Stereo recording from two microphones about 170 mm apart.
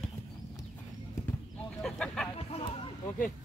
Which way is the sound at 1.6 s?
5° left (ahead or behind).